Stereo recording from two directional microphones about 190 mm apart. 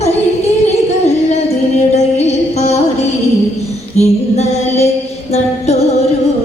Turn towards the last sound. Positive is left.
turn(degrees=35)  # may be behind; listen again after turning